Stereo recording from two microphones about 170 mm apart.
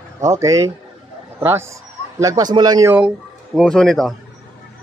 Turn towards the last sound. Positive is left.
turn(degrees=0)  # may be behind; listen again after turning